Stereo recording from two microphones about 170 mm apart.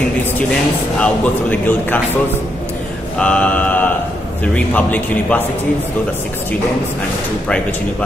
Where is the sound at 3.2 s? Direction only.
5° left (ahead or behind).